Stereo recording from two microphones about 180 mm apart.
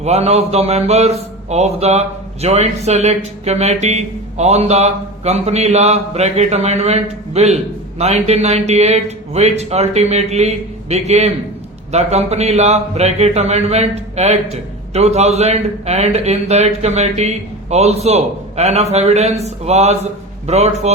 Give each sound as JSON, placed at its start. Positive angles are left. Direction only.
{"t": 0.0, "sound": "a man's voice", "side_deg": -35}